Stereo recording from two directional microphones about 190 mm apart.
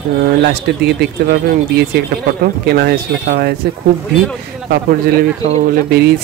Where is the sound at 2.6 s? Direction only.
55° right (ahead or behind).